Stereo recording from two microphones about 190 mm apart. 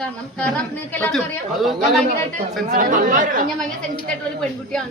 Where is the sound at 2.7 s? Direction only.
45° right (ahead or behind).